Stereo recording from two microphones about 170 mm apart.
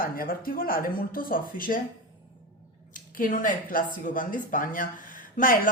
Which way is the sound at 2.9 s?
50° left (ahead or behind).